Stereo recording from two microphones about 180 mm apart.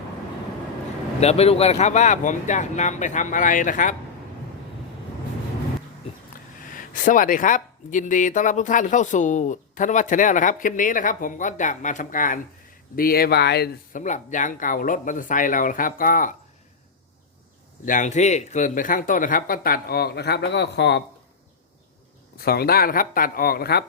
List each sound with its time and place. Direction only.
1.2 s speech: 35° left (ahead or behind)
6.6 s speech: 50° left (ahead or behind); by 13.7 s 65° left (ahead or behind)
13.9 s speech: 45° left (ahead or behind)
17.8 s speech: 45° left (ahead or behind); by 21.0 s 70° left (ahead or behind)
22.4 s speech: 60° left (ahead or behind)